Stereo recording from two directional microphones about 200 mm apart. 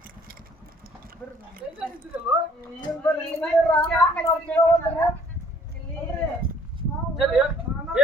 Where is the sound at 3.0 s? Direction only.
10° left (ahead or behind).